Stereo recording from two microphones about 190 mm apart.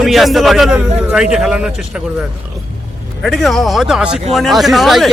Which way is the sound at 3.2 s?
Centre (ahead or behind).